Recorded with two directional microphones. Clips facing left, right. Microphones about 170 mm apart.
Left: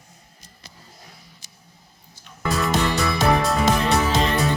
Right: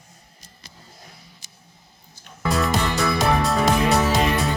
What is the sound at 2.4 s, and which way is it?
Music, centre (ahead or behind).